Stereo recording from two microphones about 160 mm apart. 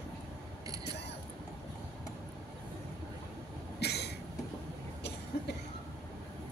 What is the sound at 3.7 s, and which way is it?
Vehicle, 90° left.